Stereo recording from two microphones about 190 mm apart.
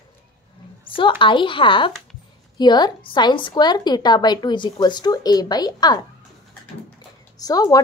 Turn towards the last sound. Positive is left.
turn(degrees=20)  # may be behind; listen again after turning